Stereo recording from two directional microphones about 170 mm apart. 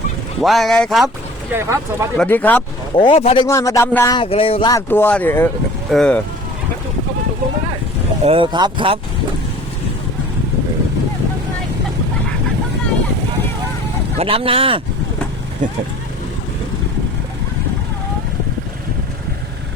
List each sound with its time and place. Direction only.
0.4 s speech: centre (ahead or behind)
1.5 s speech: 15° right (ahead or behind)
2.1 s speech: 10° left (ahead or behind)
2.9 s speech: 30° left (ahead or behind)
3.4 s speech: 20° left (ahead or behind)
4.2 s speech: 35° left (ahead or behind)
4.7 s speech: 10° left (ahead or behind)
8.2 s speech: 35° right (ahead or behind)
14.2 s speech: 35° right (ahead or behind)